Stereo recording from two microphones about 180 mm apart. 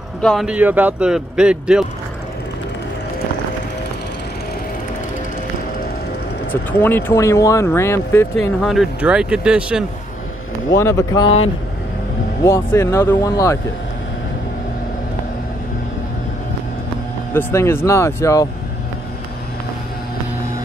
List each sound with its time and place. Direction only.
0.2 s speech: 5° left (ahead or behind)
0.5 s speech: 10° right (ahead or behind)
6.5 s speech: 10° left (ahead or behind)
8.5 s speech: centre (ahead or behind)
10.8 s speech: 15° left (ahead or behind)
12.4 s speech: 15° left (ahead or behind)
17.3 s speech: 15° left (ahead or behind)